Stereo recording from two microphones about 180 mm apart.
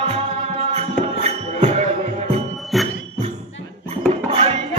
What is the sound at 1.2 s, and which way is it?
Music, 35° right (ahead or behind).